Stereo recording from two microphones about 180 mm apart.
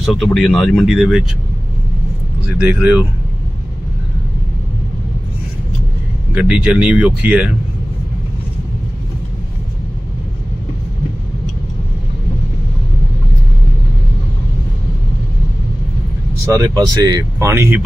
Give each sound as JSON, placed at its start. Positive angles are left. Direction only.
{"t": 0.0, "sound": "speech", "side_deg": 0}
{"t": 2.6, "sound": "speech", "side_deg": -10}
{"t": 6.3, "sound": "speech", "side_deg": -5}
{"t": 16.4, "sound": "speech", "side_deg": -20}